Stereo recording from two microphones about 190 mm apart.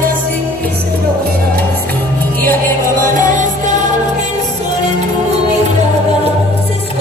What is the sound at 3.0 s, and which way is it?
Music, 40° right (ahead or behind).